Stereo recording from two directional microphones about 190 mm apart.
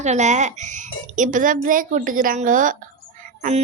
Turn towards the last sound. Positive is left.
turn(degrees=-40)  # may be behind; listen again after turning